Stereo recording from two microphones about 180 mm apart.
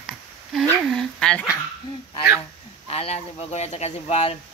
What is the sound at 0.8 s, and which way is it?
Speech, 5° left (ahead or behind).